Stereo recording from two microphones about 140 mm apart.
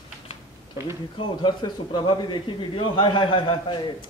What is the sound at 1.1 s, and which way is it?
A man's voice, 35° left (ahead or behind).